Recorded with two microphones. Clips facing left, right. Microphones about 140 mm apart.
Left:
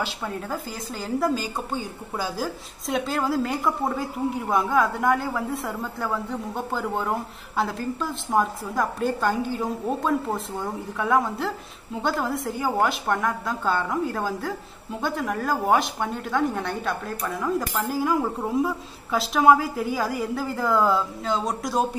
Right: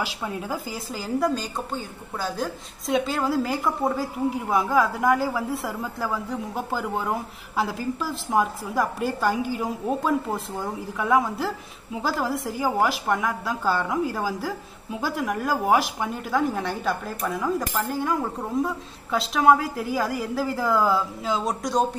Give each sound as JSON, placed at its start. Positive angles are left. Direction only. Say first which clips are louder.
{"t": 0.0, "sound": "a woman's voice", "louder": "even", "side_deg": -10}